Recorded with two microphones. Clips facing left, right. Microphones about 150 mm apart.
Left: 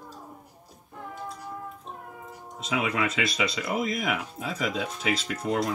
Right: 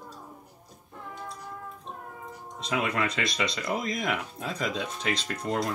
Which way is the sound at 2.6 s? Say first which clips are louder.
Left 1 dB; centre (ahead or behind).